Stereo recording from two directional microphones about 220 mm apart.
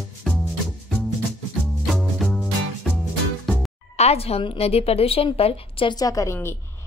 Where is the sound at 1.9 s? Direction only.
Centre (ahead or behind).